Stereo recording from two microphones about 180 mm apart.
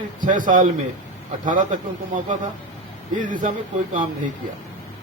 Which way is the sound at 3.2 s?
45° right (ahead or behind).